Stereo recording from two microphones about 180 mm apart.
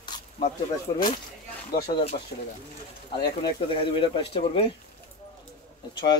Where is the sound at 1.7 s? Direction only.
60° left (ahead or behind).